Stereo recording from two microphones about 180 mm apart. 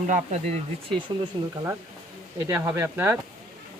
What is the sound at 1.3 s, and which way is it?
Speech, 25° right (ahead or behind).